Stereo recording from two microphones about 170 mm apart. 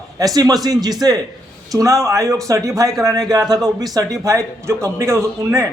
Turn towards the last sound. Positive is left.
turn(degrees=-15)  # may be behind; listen again after turning